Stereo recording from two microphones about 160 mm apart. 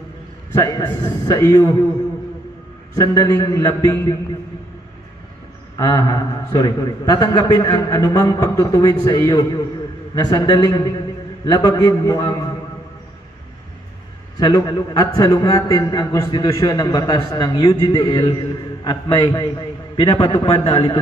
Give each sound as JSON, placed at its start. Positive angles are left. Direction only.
{"t": 0.5, "sound": "a man's voice", "side_deg": 20}
{"t": 3.0, "sound": "a man's voice", "side_deg": 25}
{"t": 5.8, "sound": "a man's voice", "side_deg": 25}
{"t": 14.3, "sound": "a man's voice", "side_deg": 25}